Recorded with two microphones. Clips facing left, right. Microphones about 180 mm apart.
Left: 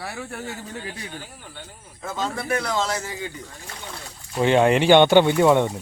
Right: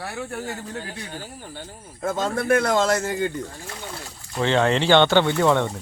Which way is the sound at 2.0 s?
50° right (ahead or behind).